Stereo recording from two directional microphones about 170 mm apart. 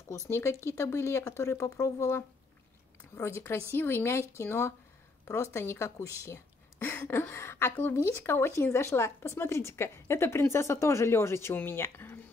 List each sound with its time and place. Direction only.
0.3 s a woman's voice: 15° left (ahead or behind)